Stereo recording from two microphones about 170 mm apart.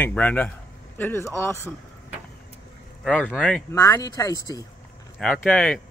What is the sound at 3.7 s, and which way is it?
Speech, 20° left (ahead or behind).